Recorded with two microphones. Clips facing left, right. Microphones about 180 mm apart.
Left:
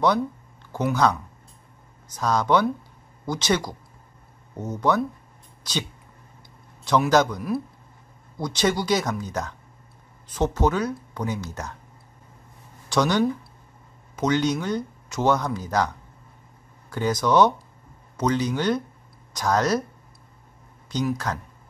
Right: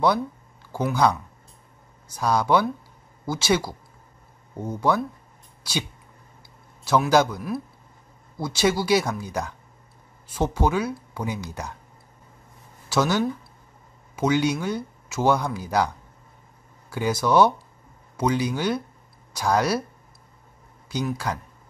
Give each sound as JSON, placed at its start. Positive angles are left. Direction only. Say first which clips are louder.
{"t": 0.7, "sound": "speech", "louder": "even", "side_deg": -10}
{"t": 12.9, "sound": "speech", "louder": "left 1 dB", "side_deg": -5}
{"t": 16.9, "sound": "speech", "louder": "even", "side_deg": -10}
{"t": 20.9, "sound": "speech", "louder": "left 1 dB", "side_deg": -10}